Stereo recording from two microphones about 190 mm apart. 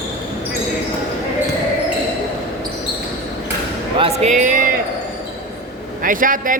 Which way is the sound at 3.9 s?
30° right (ahead or behind).